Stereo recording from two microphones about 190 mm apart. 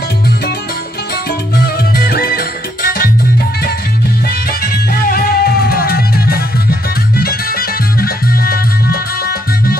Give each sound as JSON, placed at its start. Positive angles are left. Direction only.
{"t": 1.6, "sound": "music", "side_deg": 55}
{"t": 4.9, "sound": "music", "side_deg": 50}